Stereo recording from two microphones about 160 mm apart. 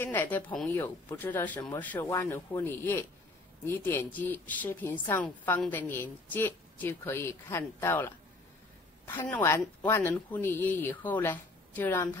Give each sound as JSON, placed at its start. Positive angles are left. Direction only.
{"t": 0.0, "sound": "a woman's voice", "side_deg": 10}